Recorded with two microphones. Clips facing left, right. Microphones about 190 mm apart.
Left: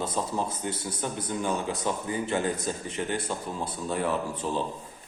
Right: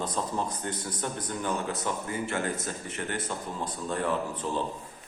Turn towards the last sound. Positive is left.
turn(degrees=10)  # may be behind; listen again after turning